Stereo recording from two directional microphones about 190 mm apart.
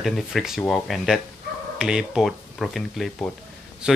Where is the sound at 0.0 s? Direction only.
Centre (ahead or behind).